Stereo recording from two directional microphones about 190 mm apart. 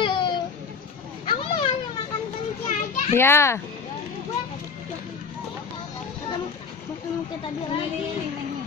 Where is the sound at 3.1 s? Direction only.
15° left (ahead or behind).